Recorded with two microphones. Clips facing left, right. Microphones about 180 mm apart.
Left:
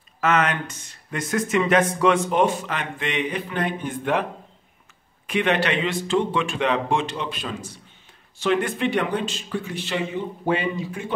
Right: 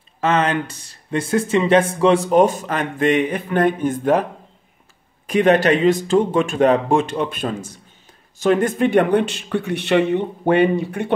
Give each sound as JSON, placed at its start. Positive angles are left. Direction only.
{"t": 0.2, "sound": "a man's voice", "side_deg": -30}